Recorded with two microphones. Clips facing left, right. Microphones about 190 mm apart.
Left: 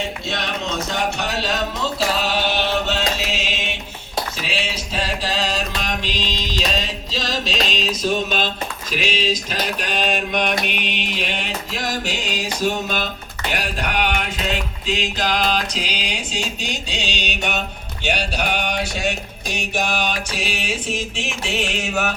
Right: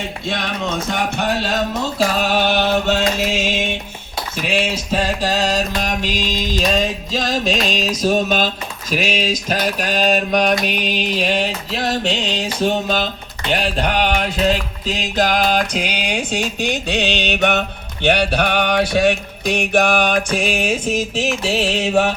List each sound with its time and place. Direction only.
2.1 s chant: 50° right (ahead or behind)
4.4 s mantra: 50° right (ahead or behind)
8.9 s speech: 45° right (ahead or behind)
10.0 s mantra: 40° right (ahead or behind)
13.5 s music: 30° right (ahead or behind)